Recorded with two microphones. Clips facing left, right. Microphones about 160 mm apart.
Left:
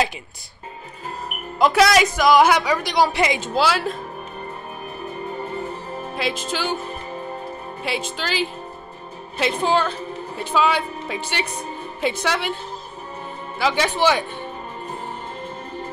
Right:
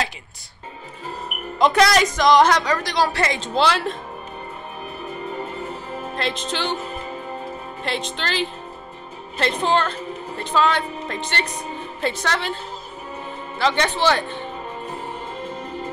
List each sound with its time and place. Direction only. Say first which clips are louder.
1.6 s a woman's voice: left 1 dB; centre (ahead or behind)
6.1 s a woman's voice: left 1 dB; 5° left (ahead or behind)
7.8 s a woman's voice: even; 5° left (ahead or behind)
13.6 s a woman's voice: even; 5° left (ahead or behind)